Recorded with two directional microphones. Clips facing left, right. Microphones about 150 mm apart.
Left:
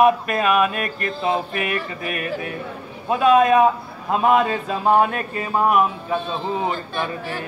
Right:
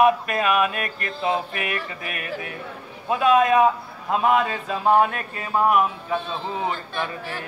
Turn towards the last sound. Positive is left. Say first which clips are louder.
# left 3 dB
turn(degrees=15)  # may be behind; listen again after turning